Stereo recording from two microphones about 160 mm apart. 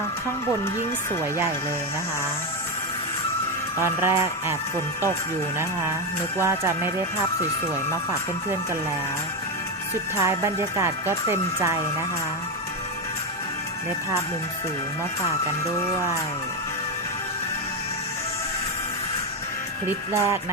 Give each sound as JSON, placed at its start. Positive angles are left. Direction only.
{"t": 3.8, "sound": "speech", "side_deg": -15}
{"t": 6.4, "sound": "speech", "side_deg": -15}
{"t": 10.2, "sound": "speech", "side_deg": -15}
{"t": 20.1, "sound": "speech", "side_deg": -15}